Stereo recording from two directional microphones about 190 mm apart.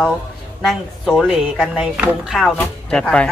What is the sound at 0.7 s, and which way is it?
Speech, centre (ahead or behind).